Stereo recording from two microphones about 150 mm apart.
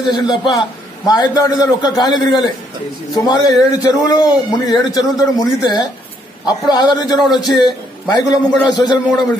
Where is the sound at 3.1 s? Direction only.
25° left (ahead or behind).